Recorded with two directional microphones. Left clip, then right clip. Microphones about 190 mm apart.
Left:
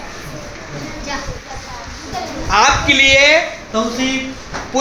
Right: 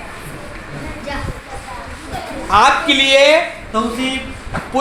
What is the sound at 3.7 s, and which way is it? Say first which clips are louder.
Speech: even; 20° right (ahead or behind).